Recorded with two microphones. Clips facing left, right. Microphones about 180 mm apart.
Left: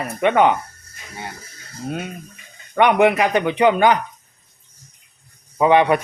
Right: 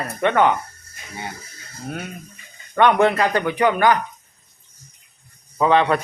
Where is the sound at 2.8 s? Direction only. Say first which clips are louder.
Left 1 dB; 15° left (ahead or behind).